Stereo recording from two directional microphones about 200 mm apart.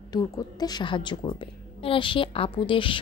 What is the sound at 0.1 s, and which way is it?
A woman's voice, 20° left (ahead or behind).